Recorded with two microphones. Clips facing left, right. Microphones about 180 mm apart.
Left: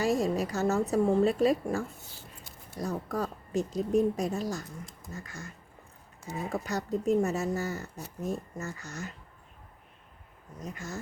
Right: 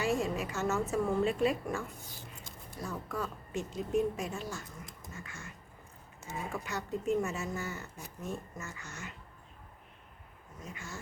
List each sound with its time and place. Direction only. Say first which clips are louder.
0.0 s a woman's voice: left 5 dB; 40° left (ahead or behind)
6.5 s a woman's voice: left 7 dB; 40° left (ahead or behind)
10.6 s a woman's voice: left 6 dB; 40° left (ahead or behind)